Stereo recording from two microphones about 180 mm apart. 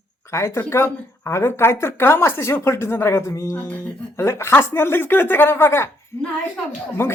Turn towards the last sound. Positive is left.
turn(degrees=15)  # may be behind; listen again after turning